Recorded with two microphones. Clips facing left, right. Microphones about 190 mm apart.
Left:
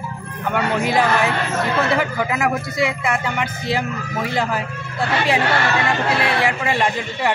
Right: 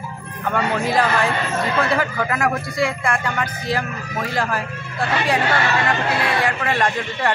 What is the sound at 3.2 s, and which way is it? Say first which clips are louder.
Speech: left 1 dB; 25° left (ahead or behind).